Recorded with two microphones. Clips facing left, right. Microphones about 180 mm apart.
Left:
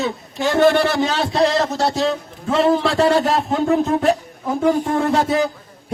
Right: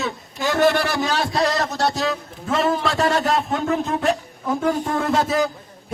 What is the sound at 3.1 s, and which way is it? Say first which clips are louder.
Speech: left 3 dB; centre (ahead or behind).